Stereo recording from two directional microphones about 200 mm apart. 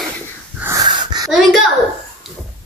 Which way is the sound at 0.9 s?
20° right (ahead or behind).